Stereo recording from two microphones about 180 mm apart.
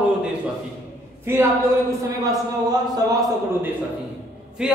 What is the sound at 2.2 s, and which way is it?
A man's voice, 20° right (ahead or behind).